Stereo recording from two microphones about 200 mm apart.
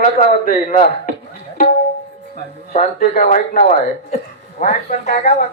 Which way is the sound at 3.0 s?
45° left (ahead or behind).